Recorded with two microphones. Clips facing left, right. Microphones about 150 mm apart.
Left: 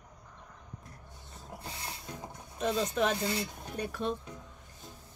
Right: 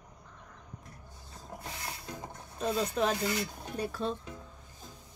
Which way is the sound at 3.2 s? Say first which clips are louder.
Right 1 dB; 25° left (ahead or behind).